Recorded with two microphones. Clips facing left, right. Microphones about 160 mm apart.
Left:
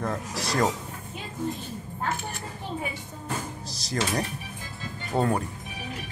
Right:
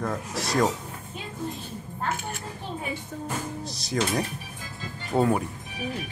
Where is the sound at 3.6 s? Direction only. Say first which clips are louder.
Right 2 dB; centre (ahead or behind).